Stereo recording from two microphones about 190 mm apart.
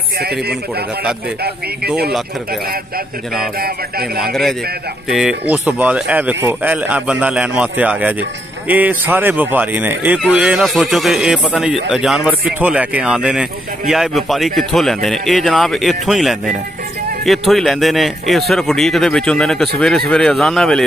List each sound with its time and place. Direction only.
0.2 s speech: 55° right (ahead or behind)
4.3 s a man's voice: centre (ahead or behind)